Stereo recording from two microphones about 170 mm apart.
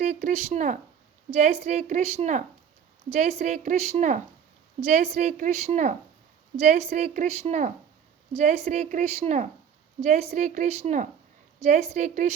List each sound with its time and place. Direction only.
0.0 s a woman's voice: 45° right (ahead or behind)